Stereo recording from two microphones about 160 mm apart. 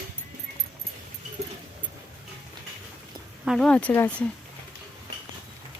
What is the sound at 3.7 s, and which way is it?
Speech, 10° left (ahead or behind).